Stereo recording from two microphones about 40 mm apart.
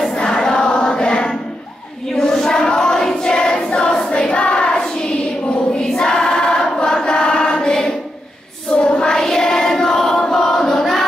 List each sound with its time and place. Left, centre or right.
0.1 s choir: left
4.1 s child singing: left
5.8 s choir: centre
9.1 s a sound: centre